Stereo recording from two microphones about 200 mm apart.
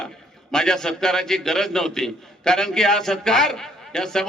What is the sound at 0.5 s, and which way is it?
A man's voice, 5° left (ahead or behind).